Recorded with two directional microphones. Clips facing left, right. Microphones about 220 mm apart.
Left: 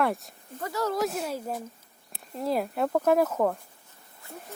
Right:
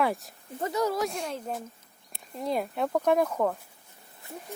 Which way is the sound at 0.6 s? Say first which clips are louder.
Right 2 dB; 20° right (ahead or behind).